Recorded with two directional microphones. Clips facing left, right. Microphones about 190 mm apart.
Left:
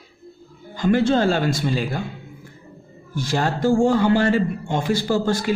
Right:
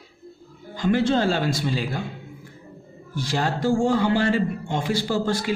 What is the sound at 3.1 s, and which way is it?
A man's voice, 45° left (ahead or behind).